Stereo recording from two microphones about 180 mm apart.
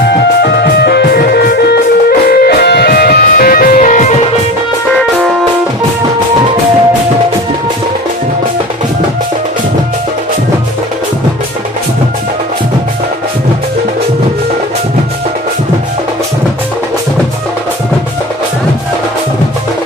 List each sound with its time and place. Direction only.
0.1 s music: 65° left (ahead or behind); by 4.1 s 45° left (ahead or behind)